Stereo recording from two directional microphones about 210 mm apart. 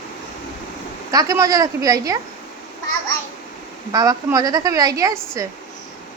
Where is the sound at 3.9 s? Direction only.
15° right (ahead or behind).